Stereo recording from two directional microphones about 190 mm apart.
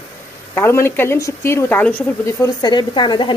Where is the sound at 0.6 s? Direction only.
15° left (ahead or behind).